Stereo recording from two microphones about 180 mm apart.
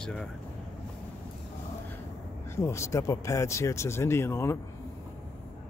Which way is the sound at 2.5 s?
15° left (ahead or behind).